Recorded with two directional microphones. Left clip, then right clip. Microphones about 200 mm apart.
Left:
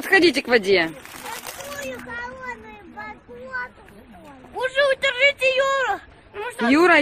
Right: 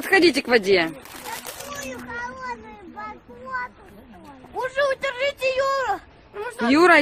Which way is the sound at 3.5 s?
20° left (ahead or behind).